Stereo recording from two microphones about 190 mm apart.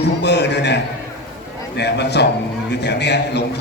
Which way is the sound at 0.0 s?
65° left (ahead or behind).